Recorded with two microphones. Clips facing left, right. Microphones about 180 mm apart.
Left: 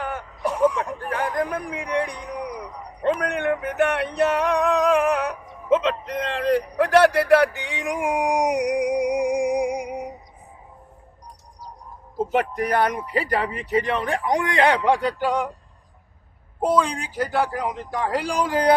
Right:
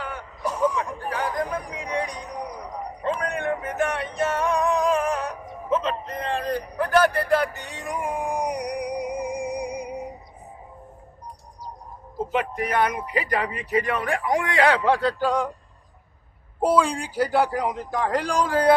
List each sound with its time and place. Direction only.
0.0 s a sound: 45° left (ahead or behind)
3.0 s music: 65° left (ahead or behind); by 10.0 s 90° left
12.3 s speech: 40° left (ahead or behind); by 15.4 s 10° left (ahead or behind)
16.6 s speech: 5° right (ahead or behind)
17.9 s speech: 5° left (ahead or behind)